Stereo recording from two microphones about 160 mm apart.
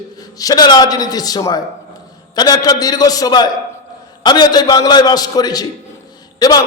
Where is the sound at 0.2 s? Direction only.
25° left (ahead or behind).